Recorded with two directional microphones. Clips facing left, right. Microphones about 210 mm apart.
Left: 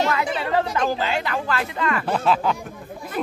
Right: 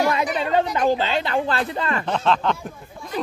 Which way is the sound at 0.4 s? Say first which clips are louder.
Right 2 dB; 25° right (ahead or behind).